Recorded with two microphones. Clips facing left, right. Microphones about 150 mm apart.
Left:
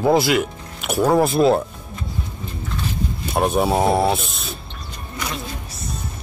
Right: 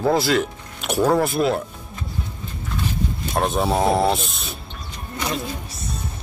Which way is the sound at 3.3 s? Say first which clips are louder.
Left 3 dB; 10° left (ahead or behind).